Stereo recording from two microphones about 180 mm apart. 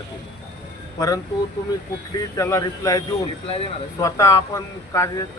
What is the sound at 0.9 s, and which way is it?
Speech, 20° left (ahead or behind).